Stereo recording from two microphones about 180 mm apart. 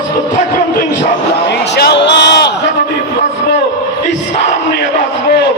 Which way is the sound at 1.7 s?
70° left (ahead or behind).